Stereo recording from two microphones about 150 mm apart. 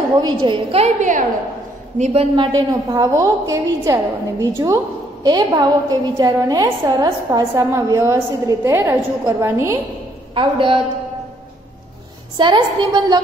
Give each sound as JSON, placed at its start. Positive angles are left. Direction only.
{"t": 0.2, "sound": "a woman's voice", "side_deg": -30}
{"t": 2.3, "sound": "a woman's voice", "side_deg": -30}
{"t": 10.3, "sound": "a woman's voice", "side_deg": -35}
{"t": 12.4, "sound": "a woman's voice", "side_deg": -30}